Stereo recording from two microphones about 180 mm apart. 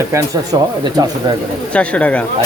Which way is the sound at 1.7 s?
5° left (ahead or behind).